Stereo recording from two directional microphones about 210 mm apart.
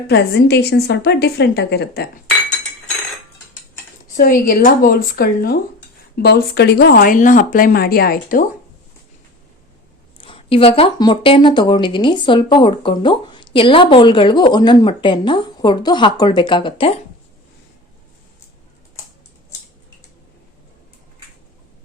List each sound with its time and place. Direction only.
0.1 s speech: 50° left (ahead or behind)
4.2 s speech: 40° left (ahead or behind)
10.2 s speech: 25° left (ahead or behind)